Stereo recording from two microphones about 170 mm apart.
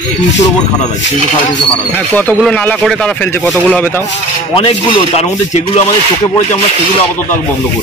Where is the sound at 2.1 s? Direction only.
10° left (ahead or behind).